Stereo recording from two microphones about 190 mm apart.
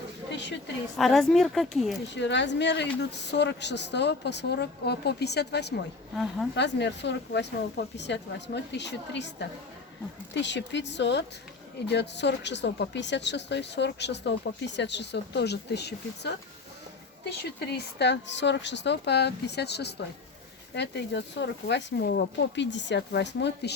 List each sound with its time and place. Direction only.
0.3 s a sound: 70° left (ahead or behind)
0.9 s speech: centre (ahead or behind)
2.1 s speech: 70° left (ahead or behind)